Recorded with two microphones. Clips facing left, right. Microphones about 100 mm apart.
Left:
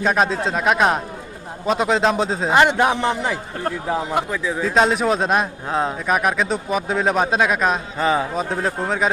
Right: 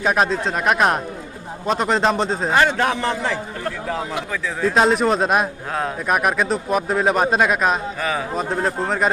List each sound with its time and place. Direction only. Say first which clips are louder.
0.0 s speech: even; centre (ahead or behind)
2.5 s a man's voice: left 3 dB; 15° left (ahead or behind)
4.6 s speech: right 2 dB; centre (ahead or behind)
7.9 s speech: left 5 dB; 25° left (ahead or behind)
8.4 s speech: right 1 dB; centre (ahead or behind)